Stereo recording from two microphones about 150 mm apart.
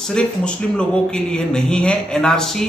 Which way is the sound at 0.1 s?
5° left (ahead or behind).